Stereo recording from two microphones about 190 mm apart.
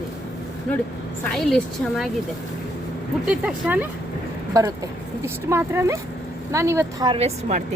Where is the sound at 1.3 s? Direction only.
Centre (ahead or behind).